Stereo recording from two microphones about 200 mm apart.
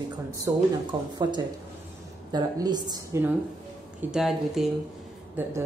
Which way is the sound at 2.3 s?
20° right (ahead or behind).